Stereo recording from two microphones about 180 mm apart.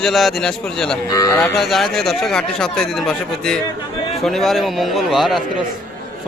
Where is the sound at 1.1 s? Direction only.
15° left (ahead or behind).